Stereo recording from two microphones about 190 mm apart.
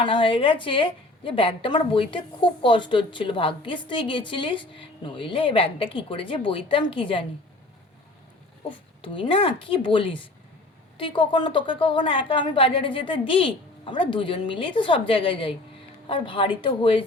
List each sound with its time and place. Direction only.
0.0 s a woman's voice: 25° left (ahead or behind)
9.0 s a woman's voice: 25° left (ahead or behind)